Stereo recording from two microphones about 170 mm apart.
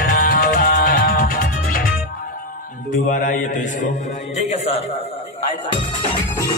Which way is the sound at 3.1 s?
50° left (ahead or behind).